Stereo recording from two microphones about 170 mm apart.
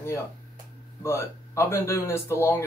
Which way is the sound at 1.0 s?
15° left (ahead or behind).